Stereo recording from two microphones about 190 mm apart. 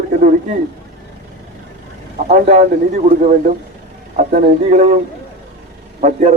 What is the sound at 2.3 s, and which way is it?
A man's voice, 35° right (ahead or behind).